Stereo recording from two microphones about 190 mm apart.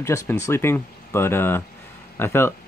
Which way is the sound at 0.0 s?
15° left (ahead or behind).